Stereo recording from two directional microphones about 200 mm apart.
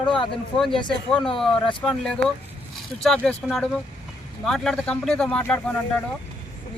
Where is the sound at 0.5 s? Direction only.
25° left (ahead or behind).